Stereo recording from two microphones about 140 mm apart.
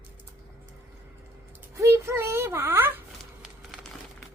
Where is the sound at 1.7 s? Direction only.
20° right (ahead or behind).